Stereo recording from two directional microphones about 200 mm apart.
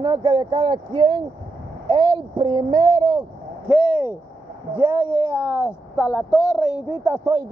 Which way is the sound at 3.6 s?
5° right (ahead or behind).